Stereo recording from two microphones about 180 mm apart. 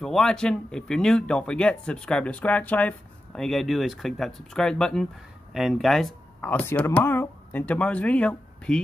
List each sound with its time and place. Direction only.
0.0 s speech: 5° left (ahead or behind)